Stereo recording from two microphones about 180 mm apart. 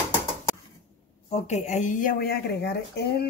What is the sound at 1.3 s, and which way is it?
Speech, 40° left (ahead or behind).